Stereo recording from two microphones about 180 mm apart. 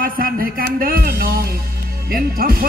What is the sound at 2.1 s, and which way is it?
Speech, 55° right (ahead or behind).